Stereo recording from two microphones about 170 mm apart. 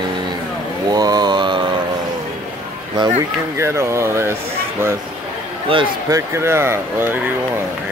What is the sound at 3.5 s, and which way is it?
Speech, 15° right (ahead or behind).